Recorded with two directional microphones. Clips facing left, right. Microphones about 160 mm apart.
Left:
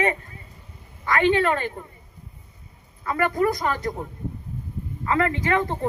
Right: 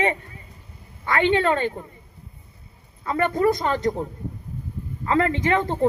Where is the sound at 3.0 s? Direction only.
25° right (ahead or behind).